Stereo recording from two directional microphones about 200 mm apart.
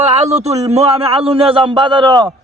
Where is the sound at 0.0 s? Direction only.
30° right (ahead or behind).